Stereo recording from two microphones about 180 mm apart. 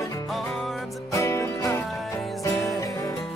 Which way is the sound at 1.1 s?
15° left (ahead or behind).